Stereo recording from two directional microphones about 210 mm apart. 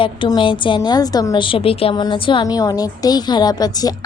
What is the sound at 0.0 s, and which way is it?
A woman's voice, 25° left (ahead or behind).